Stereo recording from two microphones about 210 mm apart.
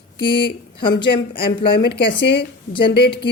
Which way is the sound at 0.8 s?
25° left (ahead or behind).